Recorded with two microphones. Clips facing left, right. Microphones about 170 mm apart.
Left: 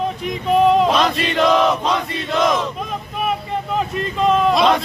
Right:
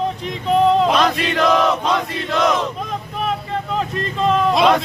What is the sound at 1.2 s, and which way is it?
Chant, centre (ahead or behind).